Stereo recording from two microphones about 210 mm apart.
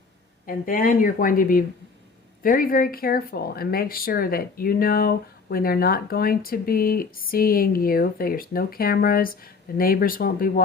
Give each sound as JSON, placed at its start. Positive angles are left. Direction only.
{"t": 0.4, "sound": "speech", "side_deg": 40}